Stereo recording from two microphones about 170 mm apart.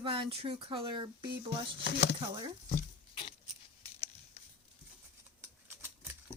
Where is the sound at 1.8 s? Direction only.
90° left.